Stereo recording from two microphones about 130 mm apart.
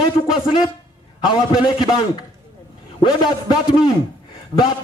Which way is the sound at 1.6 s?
40° left (ahead or behind).